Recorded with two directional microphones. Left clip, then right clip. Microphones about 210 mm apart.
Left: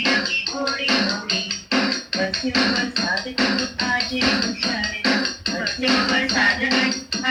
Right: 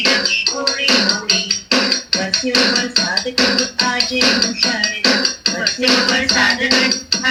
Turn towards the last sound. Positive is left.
turn(degrees=-55)  # may be behind; listen again after turning